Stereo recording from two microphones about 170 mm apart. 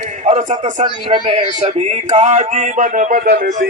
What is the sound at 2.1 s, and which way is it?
Speech, 40° right (ahead or behind).